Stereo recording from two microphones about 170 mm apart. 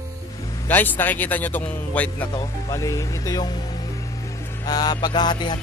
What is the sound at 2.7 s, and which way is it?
Music, 20° left (ahead or behind).